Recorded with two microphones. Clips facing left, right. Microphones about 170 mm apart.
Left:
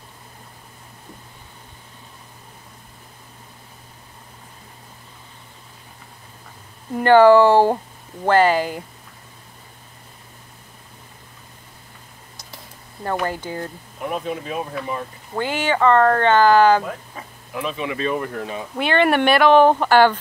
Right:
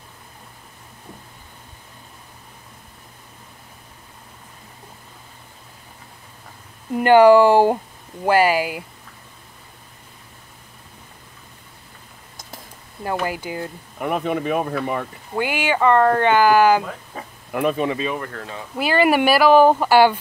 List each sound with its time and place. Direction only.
6.9 s speech: 15° right (ahead or behind)
13.1 s speech: 10° right (ahead or behind)
13.9 s speech: 60° right (ahead or behind)
15.3 s speech: 10° right (ahead or behind)
17.1 s a sound: 40° right (ahead or behind)
17.5 s speech: 55° right (ahead or behind)
18.2 s speech: 15° left (ahead or behind)
18.8 s speech: 5° right (ahead or behind)